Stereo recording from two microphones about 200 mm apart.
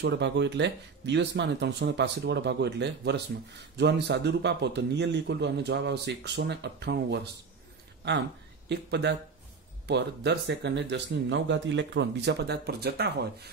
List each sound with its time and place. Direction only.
0.0 s a man's voice: 60° right (ahead or behind)
8.6 s a man's voice: 60° right (ahead or behind)